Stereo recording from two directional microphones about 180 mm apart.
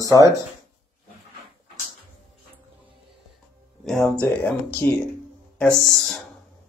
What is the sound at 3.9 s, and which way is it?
Speech, centre (ahead or behind).